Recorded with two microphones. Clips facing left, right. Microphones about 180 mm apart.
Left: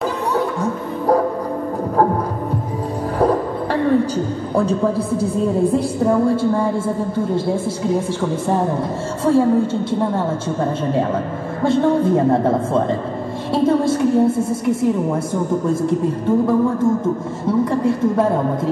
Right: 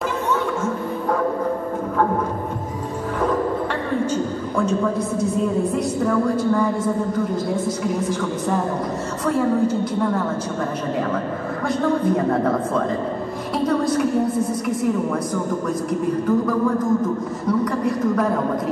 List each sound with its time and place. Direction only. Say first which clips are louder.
0.3 s music: left 1 dB; 35° left (ahead or behind)
4.0 s a woman's voice: left 1 dB; 35° left (ahead or behind)
11.6 s a woman's voice: left 5 dB; 25° left (ahead or behind)